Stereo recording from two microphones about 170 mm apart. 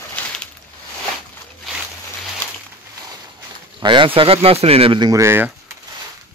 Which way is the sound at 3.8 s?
30° right (ahead or behind).